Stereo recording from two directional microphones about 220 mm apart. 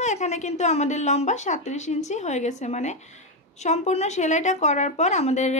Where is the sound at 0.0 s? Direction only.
30° left (ahead or behind).